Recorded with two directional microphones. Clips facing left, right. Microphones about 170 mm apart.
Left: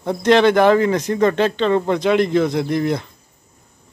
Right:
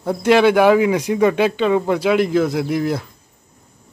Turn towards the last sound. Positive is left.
turn(degrees=-5)  # may be behind; listen again after turning